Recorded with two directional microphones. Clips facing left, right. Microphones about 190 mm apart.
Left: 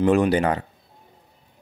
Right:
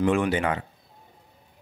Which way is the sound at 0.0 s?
40° left (ahead or behind).